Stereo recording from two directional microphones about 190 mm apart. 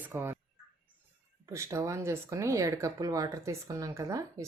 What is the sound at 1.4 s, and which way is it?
Speech, 15° right (ahead or behind).